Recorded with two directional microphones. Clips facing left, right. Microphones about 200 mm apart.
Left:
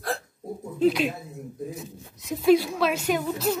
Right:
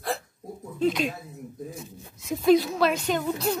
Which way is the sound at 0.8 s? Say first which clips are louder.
Left 3 dB; 5° left (ahead or behind).